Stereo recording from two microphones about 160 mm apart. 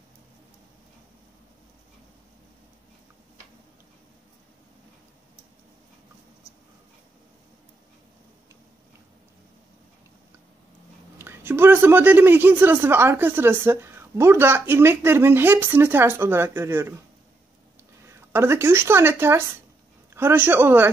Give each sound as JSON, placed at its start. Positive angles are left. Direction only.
{"t": 11.1, "sound": "a woman's voice", "side_deg": -15}
{"t": 18.0, "sound": "a woman's voice", "side_deg": -15}